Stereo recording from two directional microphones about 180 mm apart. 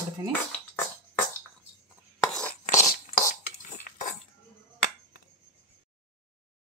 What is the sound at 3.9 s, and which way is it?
Cutlery, 55° left (ahead or behind).